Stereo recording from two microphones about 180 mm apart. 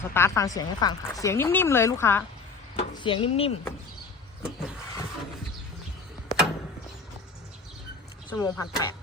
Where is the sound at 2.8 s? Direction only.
25° left (ahead or behind).